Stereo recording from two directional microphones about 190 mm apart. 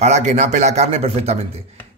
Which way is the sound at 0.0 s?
35° right (ahead or behind).